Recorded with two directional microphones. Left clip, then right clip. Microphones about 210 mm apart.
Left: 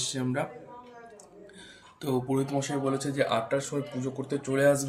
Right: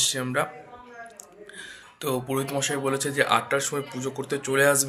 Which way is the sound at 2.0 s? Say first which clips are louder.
Right 2 dB; 5° left (ahead or behind).